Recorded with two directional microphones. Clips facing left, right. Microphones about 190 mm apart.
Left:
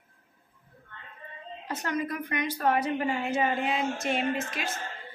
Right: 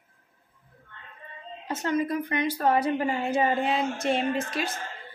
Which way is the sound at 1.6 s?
25° right (ahead or behind).